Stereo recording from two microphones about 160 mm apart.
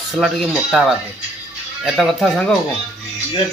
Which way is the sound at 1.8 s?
Centre (ahead or behind).